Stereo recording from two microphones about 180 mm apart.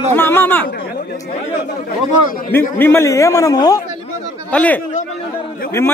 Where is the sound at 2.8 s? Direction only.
15° left (ahead or behind).